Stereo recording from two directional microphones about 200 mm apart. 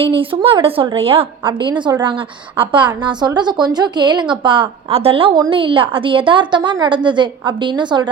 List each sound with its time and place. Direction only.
0.0 s a woman's voice: 25° right (ahead or behind)